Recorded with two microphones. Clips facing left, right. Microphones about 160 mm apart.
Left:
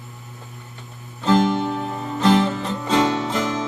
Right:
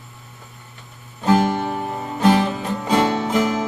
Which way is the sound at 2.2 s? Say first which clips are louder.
Even; 10° right (ahead or behind).